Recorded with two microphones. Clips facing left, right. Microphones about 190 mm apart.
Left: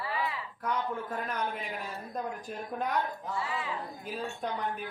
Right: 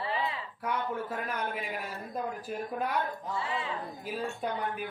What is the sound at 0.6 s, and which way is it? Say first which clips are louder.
A man's voice: even; 10° right (ahead or behind).